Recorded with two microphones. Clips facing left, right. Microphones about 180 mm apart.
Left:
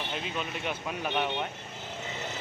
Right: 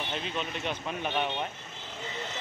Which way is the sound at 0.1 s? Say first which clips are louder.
Right 1 dB; 5° left (ahead or behind).